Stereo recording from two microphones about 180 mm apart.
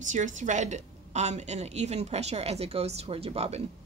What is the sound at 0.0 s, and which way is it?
A woman's voice, 45° right (ahead or behind).